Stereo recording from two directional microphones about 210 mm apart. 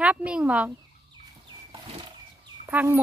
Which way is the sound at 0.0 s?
5° right (ahead or behind).